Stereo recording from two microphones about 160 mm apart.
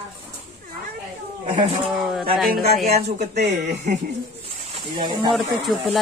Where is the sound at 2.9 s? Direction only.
45° right (ahead or behind).